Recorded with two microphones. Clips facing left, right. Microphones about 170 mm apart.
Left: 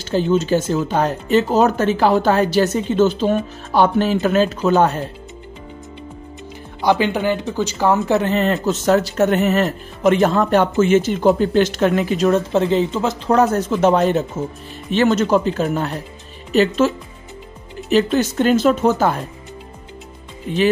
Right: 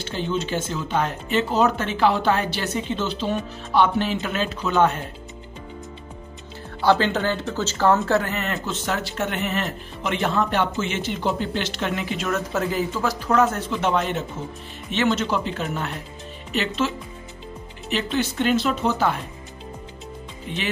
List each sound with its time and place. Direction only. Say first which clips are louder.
0.0 s speech: left 9 dB; 40° left (ahead or behind)
6.8 s speech: left 3 dB; 15° left (ahead or behind)
8.3 s speech: left 10 dB; 30° left (ahead or behind)
13.3 s speech: left 5 dB; 35° left (ahead or behind)
20.5 s speech: left 10 dB; 45° left (ahead or behind)